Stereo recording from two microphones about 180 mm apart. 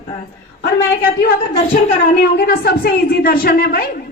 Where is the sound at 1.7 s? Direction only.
55° left (ahead or behind).